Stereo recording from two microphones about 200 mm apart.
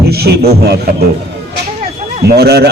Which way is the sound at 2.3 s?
55° right (ahead or behind).